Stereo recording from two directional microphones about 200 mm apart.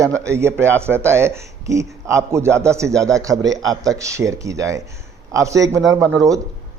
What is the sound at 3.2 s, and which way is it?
A man's voice, 15° right (ahead or behind).